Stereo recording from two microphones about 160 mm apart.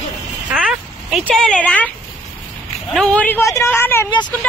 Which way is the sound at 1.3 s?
5° left (ahead or behind).